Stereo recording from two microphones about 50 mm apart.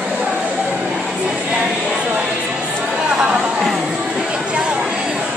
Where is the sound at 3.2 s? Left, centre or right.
Right.